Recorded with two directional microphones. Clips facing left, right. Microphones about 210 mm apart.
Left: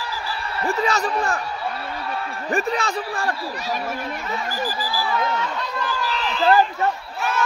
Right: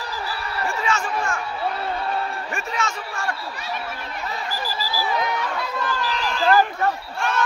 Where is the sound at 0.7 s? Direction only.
35° left (ahead or behind).